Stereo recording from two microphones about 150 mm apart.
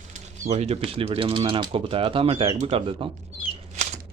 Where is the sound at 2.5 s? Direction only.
50° right (ahead or behind).